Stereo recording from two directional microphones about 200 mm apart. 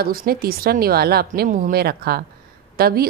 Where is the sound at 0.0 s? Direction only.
50° right (ahead or behind).